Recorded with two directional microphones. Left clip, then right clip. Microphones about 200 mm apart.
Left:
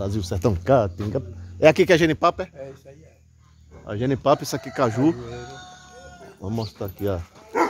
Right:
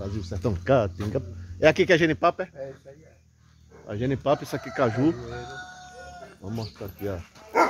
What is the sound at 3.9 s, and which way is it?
Speech, 35° left (ahead or behind).